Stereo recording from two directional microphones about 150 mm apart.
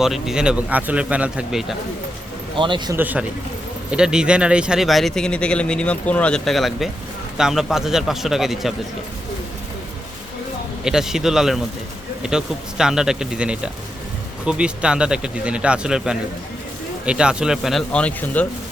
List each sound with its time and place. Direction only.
0.0 s speech: centre (ahead or behind)
2.6 s a man's voice: 30° right (ahead or behind)
2.9 s speech: 10° right (ahead or behind)
10.8 s speech: 5° right (ahead or behind)